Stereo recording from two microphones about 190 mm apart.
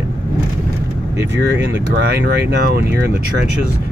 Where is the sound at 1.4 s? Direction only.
60° right (ahead or behind).